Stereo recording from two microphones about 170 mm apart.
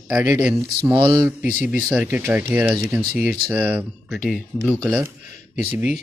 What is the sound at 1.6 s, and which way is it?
Speech, 10° right (ahead or behind).